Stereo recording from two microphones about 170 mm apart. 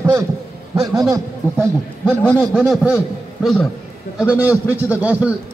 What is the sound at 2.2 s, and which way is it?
A man's voice, 5° left (ahead or behind).